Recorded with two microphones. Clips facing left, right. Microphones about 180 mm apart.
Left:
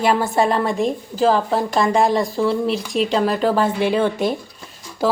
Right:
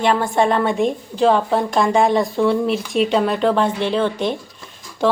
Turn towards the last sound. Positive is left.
turn(degrees=5)  # may be behind; listen again after turning